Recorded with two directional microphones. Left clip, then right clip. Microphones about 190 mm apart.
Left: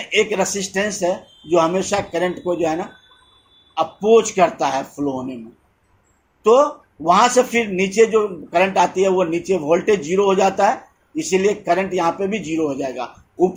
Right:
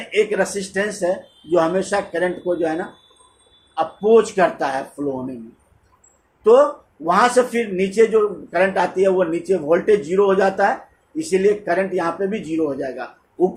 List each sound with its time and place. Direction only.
0.1 s a man's voice: 25° left (ahead or behind)
3.8 s a man's voice: 20° left (ahead or behind)
7.0 s a man's voice: 25° left (ahead or behind)